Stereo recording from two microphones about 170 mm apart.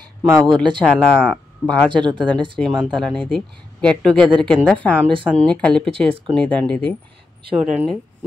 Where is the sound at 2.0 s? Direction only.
25° right (ahead or behind).